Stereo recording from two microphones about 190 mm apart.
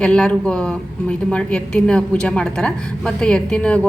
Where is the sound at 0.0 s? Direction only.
5° left (ahead or behind).